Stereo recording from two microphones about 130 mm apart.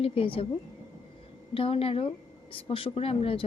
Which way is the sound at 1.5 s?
45° left (ahead or behind).